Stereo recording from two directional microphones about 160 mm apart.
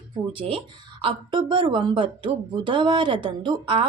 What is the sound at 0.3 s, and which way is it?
A woman's voice, 35° right (ahead or behind).